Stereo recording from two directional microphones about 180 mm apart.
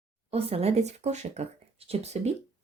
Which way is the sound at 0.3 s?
35° right (ahead or behind).